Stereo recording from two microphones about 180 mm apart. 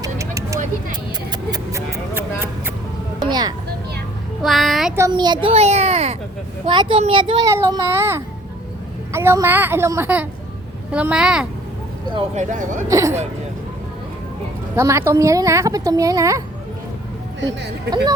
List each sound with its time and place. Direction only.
0.0 s vehicle: 15° right (ahead or behind)
1.5 s a sound: 20° right (ahead or behind)
3.2 s music: 25° right (ahead or behind)
4.4 s child singing: centre (ahead or behind)
4.9 s a woman's voice: 20° right (ahead or behind)
7.5 s a woman's voice: 15° right (ahead or behind)
12.1 s speech: 40° right (ahead or behind)
12.9 s a woman's voice: 15° right (ahead or behind)
14.8 s a woman's voice: 15° right (ahead or behind)